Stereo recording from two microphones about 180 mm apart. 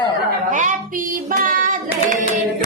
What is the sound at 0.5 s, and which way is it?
Speech, 45° right (ahead or behind).